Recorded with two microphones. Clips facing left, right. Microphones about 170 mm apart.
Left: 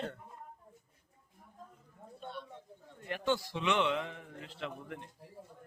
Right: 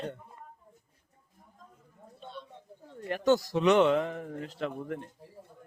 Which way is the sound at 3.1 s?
40° right (ahead or behind).